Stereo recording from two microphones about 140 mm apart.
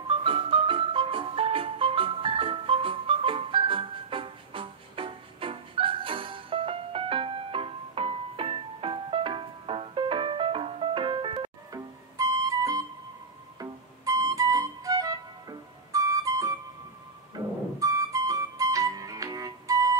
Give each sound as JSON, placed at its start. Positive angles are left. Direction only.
{"t": 0.0, "sound": "music", "side_deg": -40}
{"t": 11.7, "sound": "music", "side_deg": -25}